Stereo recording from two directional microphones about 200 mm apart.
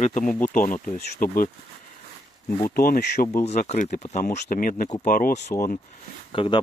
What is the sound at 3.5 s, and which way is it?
Speech, 35° left (ahead or behind).